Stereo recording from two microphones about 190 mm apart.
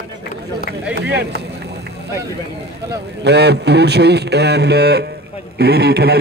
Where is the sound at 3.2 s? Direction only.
65° right (ahead or behind).